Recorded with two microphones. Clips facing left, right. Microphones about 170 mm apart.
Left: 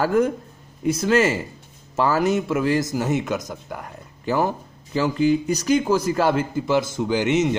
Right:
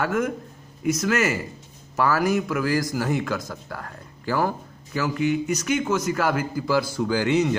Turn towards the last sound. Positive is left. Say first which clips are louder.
# left 1 dB
turn(degrees=20)  # may be behind; listen again after turning